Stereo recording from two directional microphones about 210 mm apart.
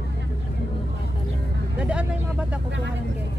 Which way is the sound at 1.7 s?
5° right (ahead or behind).